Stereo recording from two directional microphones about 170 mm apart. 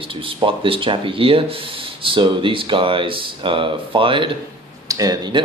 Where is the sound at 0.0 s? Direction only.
30° right (ahead or behind).